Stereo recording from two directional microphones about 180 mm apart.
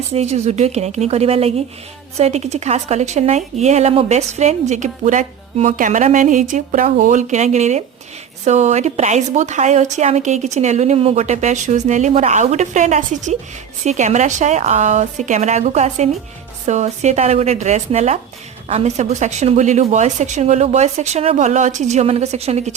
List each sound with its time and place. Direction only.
0.1 s a woman's voice: 35° right (ahead or behind)